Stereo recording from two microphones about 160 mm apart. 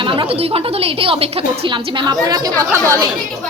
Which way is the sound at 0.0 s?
30° right (ahead or behind).